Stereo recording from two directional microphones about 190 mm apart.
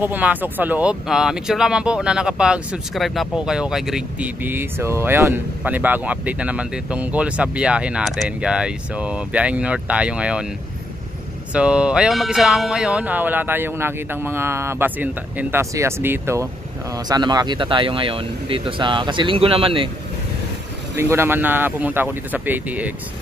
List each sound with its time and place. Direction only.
0.0 s speech: 10° right (ahead or behind)
11.5 s speech: 5° right (ahead or behind); by 19.9 s 30° right (ahead or behind)
20.9 s speech: 15° right (ahead or behind)